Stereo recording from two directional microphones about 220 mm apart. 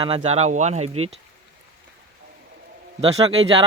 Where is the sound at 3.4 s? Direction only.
25° right (ahead or behind).